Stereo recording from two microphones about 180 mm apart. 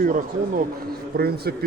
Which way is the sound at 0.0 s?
50° right (ahead or behind).